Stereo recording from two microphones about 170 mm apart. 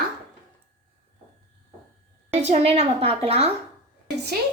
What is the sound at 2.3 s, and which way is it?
A woman's voice, 40° right (ahead or behind).